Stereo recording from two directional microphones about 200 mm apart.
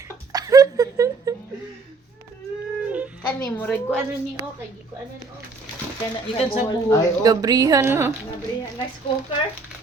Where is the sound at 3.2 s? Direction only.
10° left (ahead or behind).